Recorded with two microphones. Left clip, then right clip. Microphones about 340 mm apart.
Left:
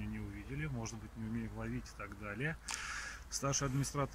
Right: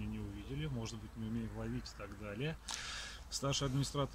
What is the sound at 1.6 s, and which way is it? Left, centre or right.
Speech, centre.